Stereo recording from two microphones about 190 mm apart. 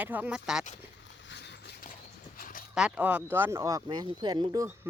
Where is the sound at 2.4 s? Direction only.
45° left (ahead or behind).